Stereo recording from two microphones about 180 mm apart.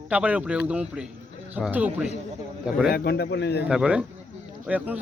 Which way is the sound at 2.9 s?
60° left (ahead or behind).